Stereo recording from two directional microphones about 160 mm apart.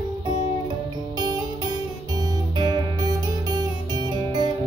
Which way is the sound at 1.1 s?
25° right (ahead or behind).